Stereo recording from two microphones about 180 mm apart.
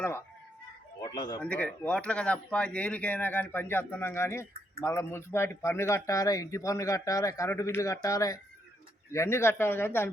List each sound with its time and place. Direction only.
1.0 s speech: 25° left (ahead or behind)
1.4 s speech: 10° left (ahead or behind)